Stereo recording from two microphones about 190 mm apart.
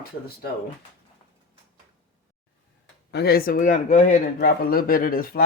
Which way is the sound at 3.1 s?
55° left (ahead or behind).